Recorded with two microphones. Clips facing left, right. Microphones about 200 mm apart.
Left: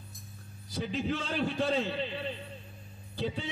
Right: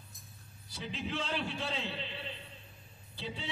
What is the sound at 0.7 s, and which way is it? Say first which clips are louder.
A man's voice: left 6 dB; 45° left (ahead or behind).